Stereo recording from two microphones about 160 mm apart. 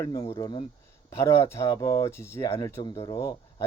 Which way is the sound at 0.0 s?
20° left (ahead or behind).